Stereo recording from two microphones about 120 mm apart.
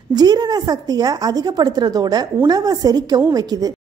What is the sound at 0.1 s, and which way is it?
A woman's voice, 35° right (ahead or behind).